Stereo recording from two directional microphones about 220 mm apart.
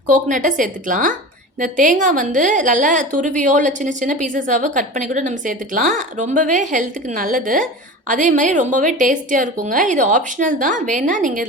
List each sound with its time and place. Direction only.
0.1 s a woman's voice: 35° right (ahead or behind)